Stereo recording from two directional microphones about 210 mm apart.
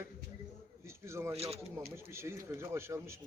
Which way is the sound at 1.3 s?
30° right (ahead or behind).